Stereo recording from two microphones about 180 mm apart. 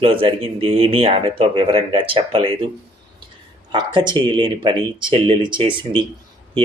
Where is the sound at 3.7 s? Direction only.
25° right (ahead or behind).